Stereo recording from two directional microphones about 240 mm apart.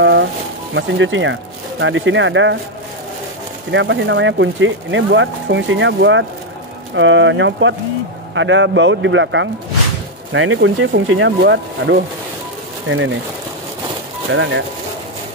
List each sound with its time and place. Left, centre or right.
0.0 s music: right
0.7 s speech: right
3.7 s speech: right
14.3 s speech: right